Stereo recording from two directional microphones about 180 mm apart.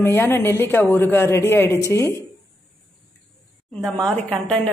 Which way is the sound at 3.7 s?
5° left (ahead or behind).